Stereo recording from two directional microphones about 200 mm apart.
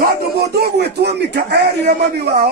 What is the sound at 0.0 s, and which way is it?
Speech, 55° right (ahead or behind).